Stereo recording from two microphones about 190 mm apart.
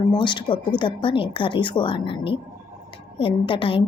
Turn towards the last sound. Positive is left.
turn(degrees=30)  # may be behind; listen again after turning